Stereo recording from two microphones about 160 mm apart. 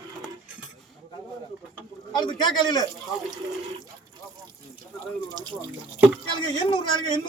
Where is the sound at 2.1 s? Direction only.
30° left (ahead or behind).